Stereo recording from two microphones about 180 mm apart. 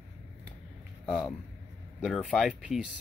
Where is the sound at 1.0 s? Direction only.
Centre (ahead or behind).